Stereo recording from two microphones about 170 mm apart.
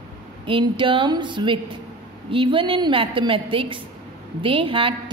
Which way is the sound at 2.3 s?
30° right (ahead or behind).